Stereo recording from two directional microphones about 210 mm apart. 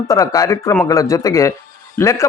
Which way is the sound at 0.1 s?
15° left (ahead or behind).